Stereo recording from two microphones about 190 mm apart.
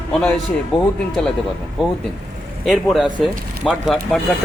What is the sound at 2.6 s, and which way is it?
Speech, centre (ahead or behind).